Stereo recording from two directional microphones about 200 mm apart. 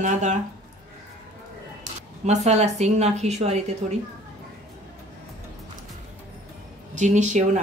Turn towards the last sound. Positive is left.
turn(degrees=-35)  # may be behind; listen again after turning